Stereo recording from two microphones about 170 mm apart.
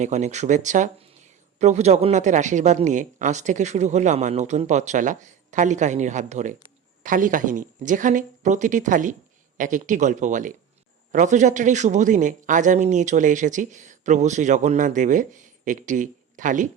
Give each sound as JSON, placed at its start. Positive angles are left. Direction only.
{"t": 0.0, "sound": "speech", "side_deg": -45}